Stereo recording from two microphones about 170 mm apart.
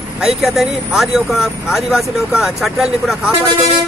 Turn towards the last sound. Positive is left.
turn(degrees=0)  # may be behind; listen again after turning